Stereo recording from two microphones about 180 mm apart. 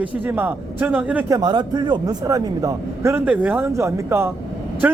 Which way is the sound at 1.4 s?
25° right (ahead or behind).